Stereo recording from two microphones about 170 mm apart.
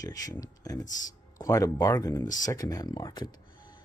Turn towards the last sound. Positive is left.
turn(degrees=25)  # may be behind; listen again after turning